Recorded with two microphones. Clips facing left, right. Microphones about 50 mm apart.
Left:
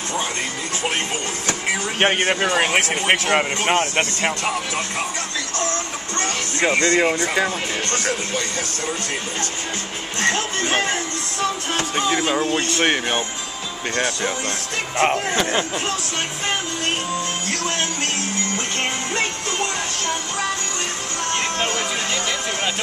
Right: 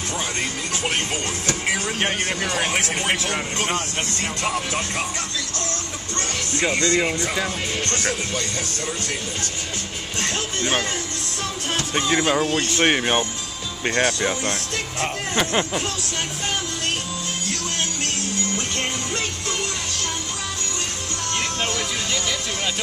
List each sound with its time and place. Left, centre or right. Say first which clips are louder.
2.0 s speech: left 5 dB; left
2.2 s speech: left 5 dB; left
6.1 s speech: left 2 dB; left
12.2 s speech: even; centre
15.3 s speech: left 1 dB; centre
21.3 s music: left 2 dB; left